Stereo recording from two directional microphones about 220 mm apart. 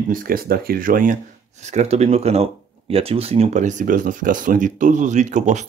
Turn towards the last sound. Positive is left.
turn(degrees=-35)  # may be behind; listen again after turning